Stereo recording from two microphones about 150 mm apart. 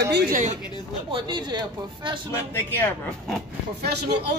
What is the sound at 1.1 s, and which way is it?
Speech, 30° right (ahead or behind).